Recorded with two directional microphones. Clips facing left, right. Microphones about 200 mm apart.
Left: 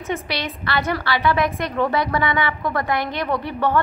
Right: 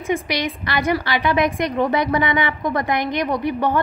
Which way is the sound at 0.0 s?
10° right (ahead or behind).